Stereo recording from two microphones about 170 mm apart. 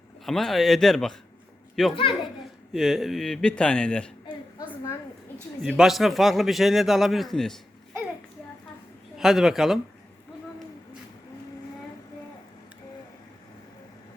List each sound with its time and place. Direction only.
0.3 s a man's voice: centre (ahead or behind)
4.5 s a sound: 20° left (ahead or behind)
5.6 s a man's voice: centre (ahead or behind)
9.1 s a man's voice: centre (ahead or behind)